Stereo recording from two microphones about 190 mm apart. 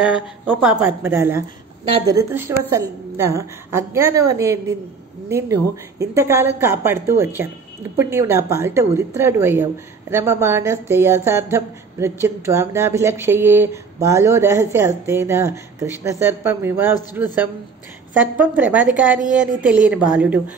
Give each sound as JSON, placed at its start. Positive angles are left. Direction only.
{"t": 0.0, "sound": "speech", "side_deg": -5}
{"t": 1.9, "sound": "a woman's voice", "side_deg": -30}
{"t": 2.1, "sound": "speech", "side_deg": -15}